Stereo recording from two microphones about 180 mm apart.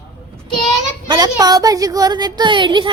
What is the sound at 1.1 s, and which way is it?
Speech, 20° right (ahead or behind).